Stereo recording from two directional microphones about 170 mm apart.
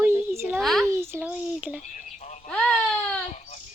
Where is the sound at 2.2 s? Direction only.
45° left (ahead or behind).